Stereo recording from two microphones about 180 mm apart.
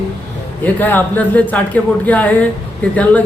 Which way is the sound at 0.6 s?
10° left (ahead or behind).